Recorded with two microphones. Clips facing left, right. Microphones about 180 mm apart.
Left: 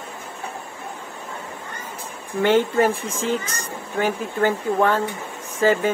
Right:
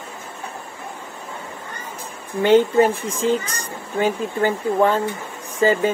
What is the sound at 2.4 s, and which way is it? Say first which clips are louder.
Speech: right 3 dB; 15° right (ahead or behind).